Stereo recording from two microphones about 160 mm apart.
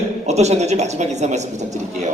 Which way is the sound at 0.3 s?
45° right (ahead or behind).